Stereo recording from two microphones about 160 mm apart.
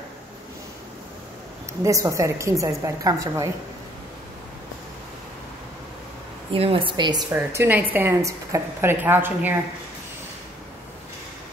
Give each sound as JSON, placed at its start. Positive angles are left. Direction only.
{"t": 1.8, "sound": "a woman's voice", "side_deg": -20}
{"t": 6.5, "sound": "speech", "side_deg": -35}
{"t": 7.5, "sound": "a woman's voice", "side_deg": -10}